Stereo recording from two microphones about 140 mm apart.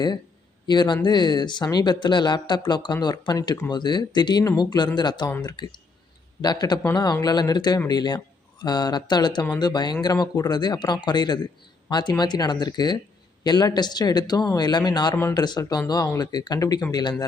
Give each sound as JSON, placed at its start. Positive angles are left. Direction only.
{"t": 0.7, "sound": "speech", "side_deg": 30}